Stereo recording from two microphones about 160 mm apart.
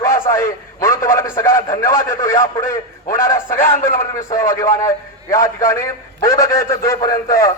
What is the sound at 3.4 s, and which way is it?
Speech, 55° left (ahead or behind).